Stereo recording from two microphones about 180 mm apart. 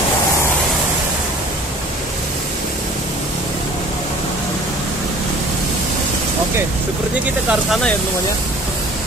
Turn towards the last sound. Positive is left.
turn(degrees=0)  # may be behind; listen again after turning